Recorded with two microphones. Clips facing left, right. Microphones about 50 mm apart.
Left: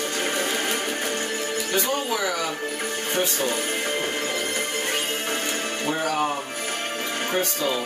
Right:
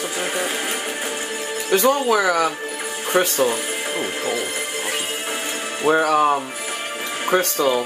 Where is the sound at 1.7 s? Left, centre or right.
Right.